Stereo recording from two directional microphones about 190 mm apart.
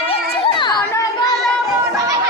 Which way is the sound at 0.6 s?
25° left (ahead or behind).